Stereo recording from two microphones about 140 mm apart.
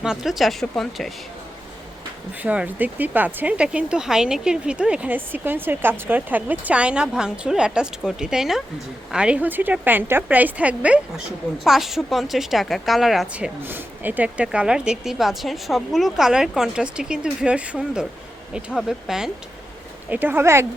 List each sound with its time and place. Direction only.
0.0 s a woman's voice: 5° right (ahead or behind)
2.4 s a woman's voice: 10° right (ahead or behind)
20.1 s speech: 15° right (ahead or behind)